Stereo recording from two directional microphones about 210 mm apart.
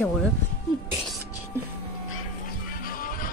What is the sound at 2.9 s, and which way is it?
Music, 45° left (ahead or behind).